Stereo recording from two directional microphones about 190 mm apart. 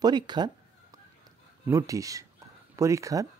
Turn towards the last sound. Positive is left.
turn(degrees=-15)  # may be behind; listen again after turning